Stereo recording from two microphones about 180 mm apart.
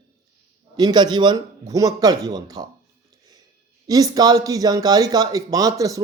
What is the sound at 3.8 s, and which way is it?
Speech, 20° right (ahead or behind).